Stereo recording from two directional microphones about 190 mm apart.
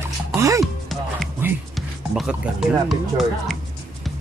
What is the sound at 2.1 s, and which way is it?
Speech, 5° right (ahead or behind).